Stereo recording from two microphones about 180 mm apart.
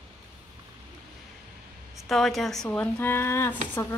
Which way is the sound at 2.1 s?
Centre (ahead or behind).